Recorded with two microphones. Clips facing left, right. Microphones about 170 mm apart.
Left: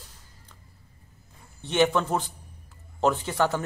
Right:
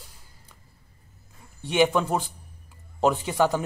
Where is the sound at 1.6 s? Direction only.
10° right (ahead or behind).